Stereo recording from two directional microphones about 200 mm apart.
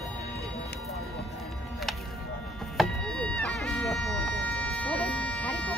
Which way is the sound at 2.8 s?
5° left (ahead or behind).